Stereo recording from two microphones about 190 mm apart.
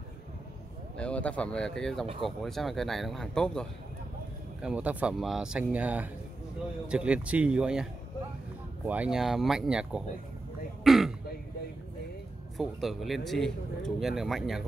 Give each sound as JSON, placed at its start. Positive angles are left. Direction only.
{"t": 0.9, "sound": "speech", "side_deg": 5}
{"t": 10.8, "sound": "throat clearing", "side_deg": 0}
{"t": 12.5, "sound": "speech", "side_deg": 0}